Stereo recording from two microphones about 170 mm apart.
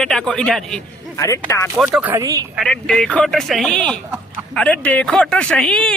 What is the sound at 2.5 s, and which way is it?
Speech, 5° left (ahead or behind).